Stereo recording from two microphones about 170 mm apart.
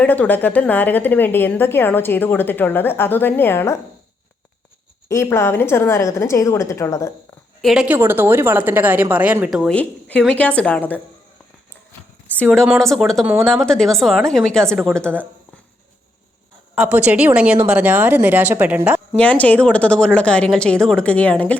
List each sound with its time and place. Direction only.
0.0 s a woman's voice: 10° left (ahead or behind)
5.0 s a woman's voice: 15° left (ahead or behind)
7.6 s a woman's voice: 5° right (ahead or behind)
12.3 s a woman's voice: 5° left (ahead or behind)
16.7 s a woman's voice: 10° right (ahead or behind)
19.1 s a woman's voice: 5° left (ahead or behind)